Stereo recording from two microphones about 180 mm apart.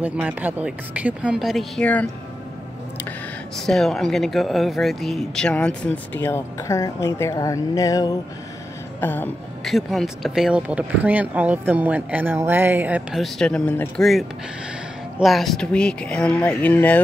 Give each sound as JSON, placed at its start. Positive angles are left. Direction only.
{"t": 0.0, "sound": "speech", "side_deg": -10}
{"t": 3.5, "sound": "speech", "side_deg": 0}
{"t": 9.8, "sound": "speech", "side_deg": 0}